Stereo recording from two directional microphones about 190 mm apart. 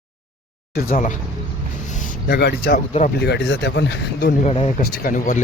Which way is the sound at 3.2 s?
65° left (ahead or behind).